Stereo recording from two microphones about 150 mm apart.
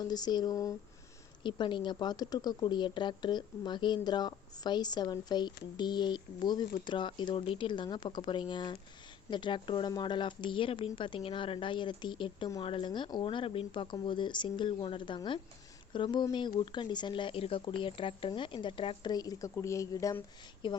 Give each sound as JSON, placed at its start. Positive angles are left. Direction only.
{"t": 0.0, "sound": "speech", "side_deg": 25}
{"t": 20.6, "sound": "speech", "side_deg": 35}